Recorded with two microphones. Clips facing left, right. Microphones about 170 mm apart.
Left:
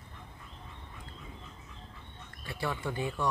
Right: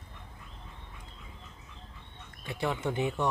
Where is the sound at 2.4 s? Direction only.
20° right (ahead or behind).